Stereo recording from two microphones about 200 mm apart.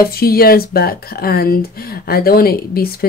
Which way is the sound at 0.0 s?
50° left (ahead or behind).